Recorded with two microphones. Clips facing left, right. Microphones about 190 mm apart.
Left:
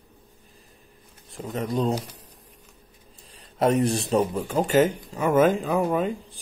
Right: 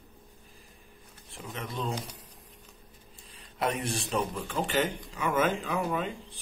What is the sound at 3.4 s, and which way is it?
Speech, 40° left (ahead or behind).